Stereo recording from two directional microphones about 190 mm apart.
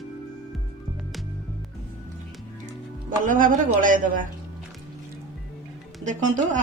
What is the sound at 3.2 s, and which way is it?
A woman's voice, 45° right (ahead or behind).